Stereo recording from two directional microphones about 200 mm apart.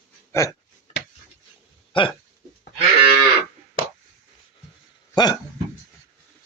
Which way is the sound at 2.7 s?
25° right (ahead or behind).